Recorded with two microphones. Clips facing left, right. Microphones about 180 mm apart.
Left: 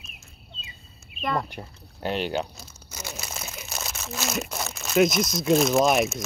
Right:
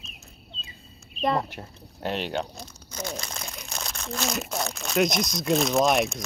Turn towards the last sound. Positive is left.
turn(degrees=0)  # may be behind; listen again after turning